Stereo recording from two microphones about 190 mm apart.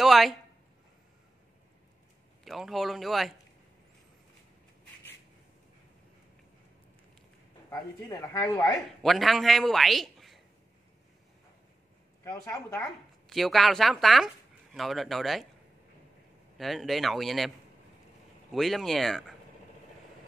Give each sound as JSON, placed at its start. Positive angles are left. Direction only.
{"t": 0.0, "sound": "a sound", "side_deg": 0}
{"t": 2.4, "sound": "speech", "side_deg": 0}
{"t": 7.7, "sound": "speech", "side_deg": 20}
{"t": 9.0, "sound": "a man's voice", "side_deg": 0}
{"t": 12.3, "sound": "speech", "side_deg": 15}
{"t": 13.3, "sound": "speech", "side_deg": 0}
{"t": 16.5, "sound": "speech", "side_deg": 0}
{"t": 18.5, "sound": "speech", "side_deg": 0}